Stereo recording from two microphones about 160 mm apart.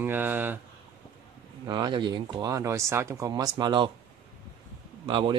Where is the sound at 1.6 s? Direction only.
25° right (ahead or behind).